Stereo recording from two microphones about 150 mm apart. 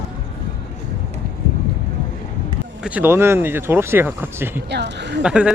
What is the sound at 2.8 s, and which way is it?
Speech, 10° right (ahead or behind).